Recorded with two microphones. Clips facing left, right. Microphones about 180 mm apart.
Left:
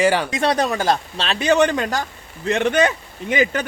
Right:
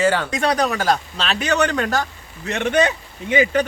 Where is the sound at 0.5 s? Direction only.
25° left (ahead or behind).